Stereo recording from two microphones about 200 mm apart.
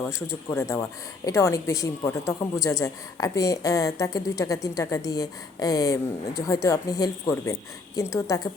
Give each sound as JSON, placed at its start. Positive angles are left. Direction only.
{"t": 0.0, "sound": "speech", "side_deg": 15}